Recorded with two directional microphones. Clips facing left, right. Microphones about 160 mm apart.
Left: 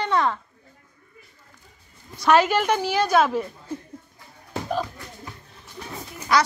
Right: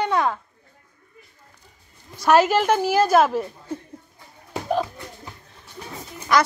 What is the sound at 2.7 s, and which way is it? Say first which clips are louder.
Speech: right 3 dB; 5° right (ahead or behind).